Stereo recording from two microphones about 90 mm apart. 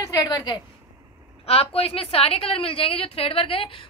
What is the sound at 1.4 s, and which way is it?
A woman's voice, 90° left.